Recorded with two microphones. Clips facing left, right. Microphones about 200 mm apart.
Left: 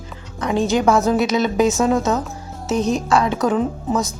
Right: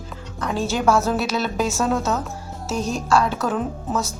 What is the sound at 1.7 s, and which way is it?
A woman's voice, centre (ahead or behind).